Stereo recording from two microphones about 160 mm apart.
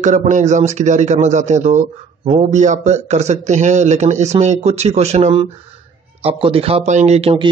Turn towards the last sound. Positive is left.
turn(degrees=-35)  # may be behind; listen again after turning